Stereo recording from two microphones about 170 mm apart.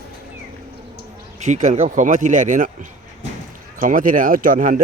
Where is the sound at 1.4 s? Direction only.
45° right (ahead or behind).